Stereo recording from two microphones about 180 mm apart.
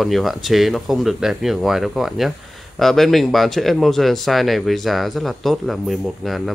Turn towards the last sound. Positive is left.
turn(degrees=0)  # may be behind; listen again after turning